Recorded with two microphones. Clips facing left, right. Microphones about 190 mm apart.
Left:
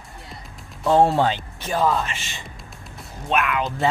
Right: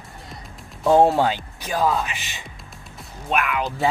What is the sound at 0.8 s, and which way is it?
Speech, 15° right (ahead or behind).